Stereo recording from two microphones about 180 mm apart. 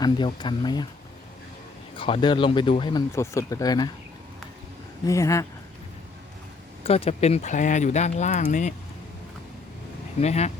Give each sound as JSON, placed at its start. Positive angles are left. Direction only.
{"t": 0.0, "sound": "speech", "side_deg": 25}
{"t": 2.0, "sound": "speech", "side_deg": 30}
{"t": 3.1, "sound": "speech", "side_deg": 15}
{"t": 5.0, "sound": "speech", "side_deg": 15}
{"t": 6.8, "sound": "speech", "side_deg": 35}
{"t": 10.2, "sound": "speech", "side_deg": 35}